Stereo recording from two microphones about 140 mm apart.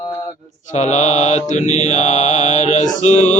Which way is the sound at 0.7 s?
55° left (ahead or behind).